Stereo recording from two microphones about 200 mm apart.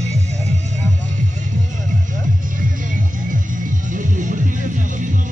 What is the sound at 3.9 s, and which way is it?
Music, 40° right (ahead or behind).